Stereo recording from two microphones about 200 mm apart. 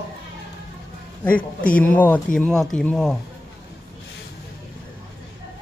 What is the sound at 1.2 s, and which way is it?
Speech, 10° left (ahead or behind).